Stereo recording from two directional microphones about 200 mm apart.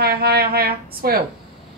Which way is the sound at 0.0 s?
50° right (ahead or behind).